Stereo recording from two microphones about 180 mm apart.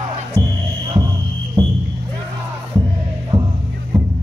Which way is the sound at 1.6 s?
25° right (ahead or behind).